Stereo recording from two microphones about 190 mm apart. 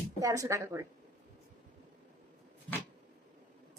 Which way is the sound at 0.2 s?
15° right (ahead or behind).